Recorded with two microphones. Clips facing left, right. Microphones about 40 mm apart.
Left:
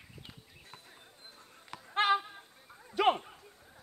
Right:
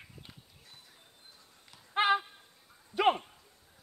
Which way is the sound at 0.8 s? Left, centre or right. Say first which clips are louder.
Left 4 dB; left.